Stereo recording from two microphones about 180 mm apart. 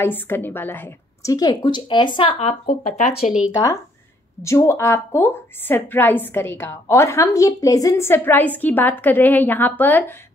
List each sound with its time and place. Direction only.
0.0 s a woman's voice: 10° left (ahead or behind); by 2.3 s 25° left (ahead or behind)
2.3 s speech: 40° left (ahead or behind)
4.4 s a woman's voice: 15° left (ahead or behind)